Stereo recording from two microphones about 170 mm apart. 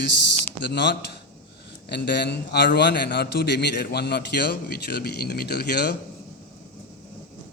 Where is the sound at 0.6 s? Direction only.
90° left; by 6.0 s 75° left (ahead or behind).